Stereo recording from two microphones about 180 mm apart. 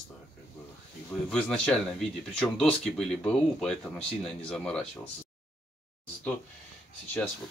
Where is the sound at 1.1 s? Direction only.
5° left (ahead or behind).